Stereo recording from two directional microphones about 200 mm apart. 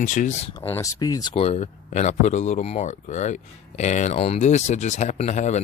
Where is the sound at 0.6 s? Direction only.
15° left (ahead or behind); by 5.6 s 35° left (ahead or behind).